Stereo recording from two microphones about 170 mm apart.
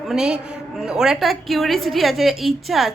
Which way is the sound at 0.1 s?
5° right (ahead or behind).